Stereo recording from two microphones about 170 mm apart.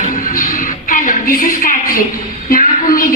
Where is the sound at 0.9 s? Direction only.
55° left (ahead or behind).